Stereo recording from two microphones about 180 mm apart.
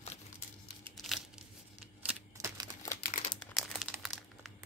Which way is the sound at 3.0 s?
45° left (ahead or behind).